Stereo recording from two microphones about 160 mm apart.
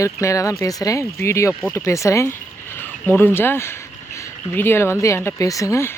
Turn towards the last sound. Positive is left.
turn(degrees=15)  # may be behind; listen again after turning